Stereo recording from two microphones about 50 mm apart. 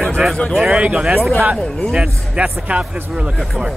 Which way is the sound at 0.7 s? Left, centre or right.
Right.